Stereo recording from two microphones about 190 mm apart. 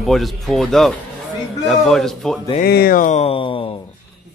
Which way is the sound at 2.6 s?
55° left (ahead or behind).